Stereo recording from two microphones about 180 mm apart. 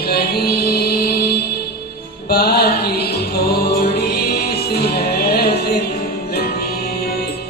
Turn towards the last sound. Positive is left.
turn(degrees=65)  # may be behind; listen again after turning